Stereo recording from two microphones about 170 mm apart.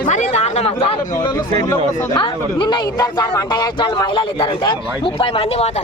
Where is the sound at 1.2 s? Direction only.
25° left (ahead or behind).